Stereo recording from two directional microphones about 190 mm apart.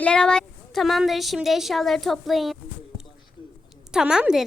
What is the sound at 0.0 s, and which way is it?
A woman's voice, 5° left (ahead or behind).